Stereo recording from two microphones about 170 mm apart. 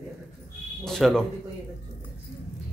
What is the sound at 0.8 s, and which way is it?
Speech, 5° left (ahead or behind).